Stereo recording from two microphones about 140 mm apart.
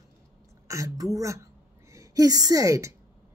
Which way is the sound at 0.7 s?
25° right (ahead or behind).